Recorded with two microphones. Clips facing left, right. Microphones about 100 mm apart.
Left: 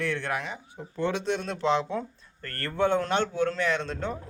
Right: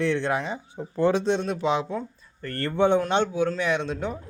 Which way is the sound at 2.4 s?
20° right (ahead or behind).